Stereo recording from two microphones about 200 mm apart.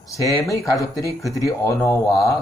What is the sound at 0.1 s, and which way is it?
Speech, 15° left (ahead or behind).